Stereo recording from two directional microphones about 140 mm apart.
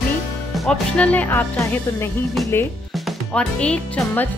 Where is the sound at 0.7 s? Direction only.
10° left (ahead or behind).